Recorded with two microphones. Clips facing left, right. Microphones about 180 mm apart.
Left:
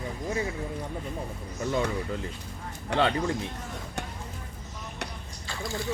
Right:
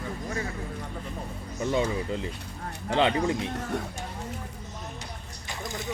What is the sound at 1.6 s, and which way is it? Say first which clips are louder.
A man's voice: right 2 dB; 20° right (ahead or behind).